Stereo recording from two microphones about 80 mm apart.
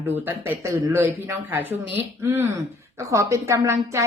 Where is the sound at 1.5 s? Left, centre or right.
Right.